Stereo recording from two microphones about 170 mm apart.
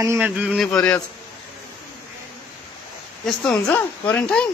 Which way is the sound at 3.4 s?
5° left (ahead or behind).